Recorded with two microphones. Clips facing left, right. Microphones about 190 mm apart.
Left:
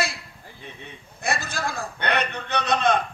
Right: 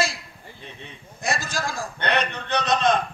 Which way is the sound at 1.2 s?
60° left (ahead or behind).